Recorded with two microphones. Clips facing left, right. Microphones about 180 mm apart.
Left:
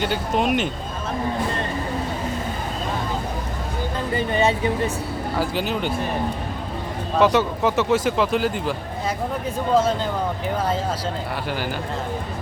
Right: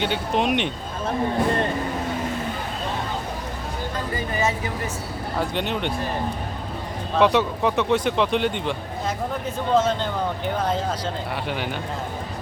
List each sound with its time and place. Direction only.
0.0 s a man's voice: centre (ahead or behind)
4.1 s speech: 30° left (ahead or behind)
5.4 s a man's voice: 5° left (ahead or behind)
7.2 s a man's voice: centre (ahead or behind)